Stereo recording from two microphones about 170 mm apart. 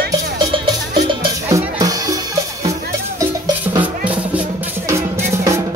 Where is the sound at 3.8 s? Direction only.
10° right (ahead or behind).